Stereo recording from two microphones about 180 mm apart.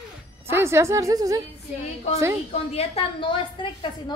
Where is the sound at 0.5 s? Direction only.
15° right (ahead or behind).